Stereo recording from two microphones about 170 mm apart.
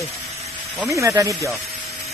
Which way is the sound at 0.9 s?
20° right (ahead or behind).